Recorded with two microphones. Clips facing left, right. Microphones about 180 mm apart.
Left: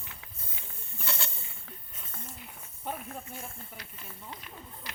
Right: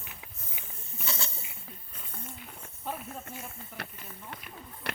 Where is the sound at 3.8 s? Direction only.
60° right (ahead or behind).